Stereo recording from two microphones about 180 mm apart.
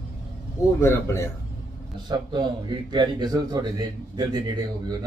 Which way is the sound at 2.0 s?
25° right (ahead or behind).